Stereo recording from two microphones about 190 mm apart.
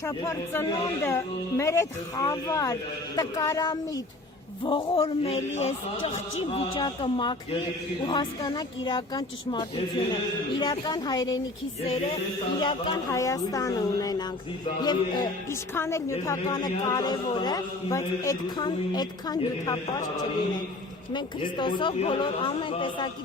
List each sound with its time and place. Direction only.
0.0 s a man's voice: 15° left (ahead or behind)
11.8 s music: 35° left (ahead or behind)
12.5 s a man's voice: 25° left (ahead or behind)
21.1 s a man's voice: 25° left (ahead or behind)